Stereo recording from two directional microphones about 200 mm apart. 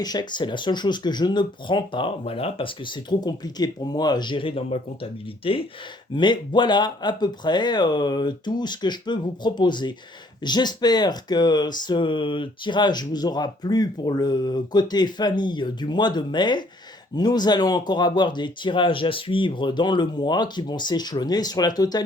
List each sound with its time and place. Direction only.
0.0 s speech: 20° left (ahead or behind)